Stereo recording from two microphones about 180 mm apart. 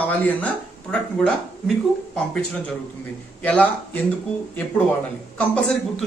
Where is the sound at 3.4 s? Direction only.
10° left (ahead or behind).